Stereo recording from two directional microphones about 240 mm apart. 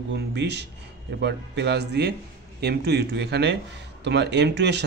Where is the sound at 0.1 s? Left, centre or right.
Right.